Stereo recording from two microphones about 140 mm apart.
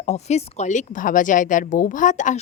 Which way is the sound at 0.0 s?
55° left (ahead or behind).